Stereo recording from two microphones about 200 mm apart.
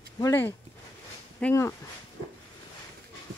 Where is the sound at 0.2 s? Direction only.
10° left (ahead or behind).